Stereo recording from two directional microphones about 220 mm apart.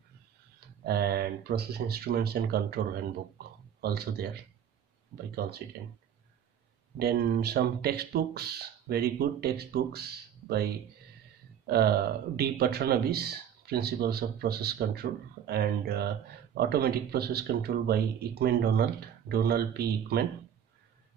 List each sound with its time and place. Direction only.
0.6 s speech: 45° right (ahead or behind)
7.0 s speech: 45° right (ahead or behind)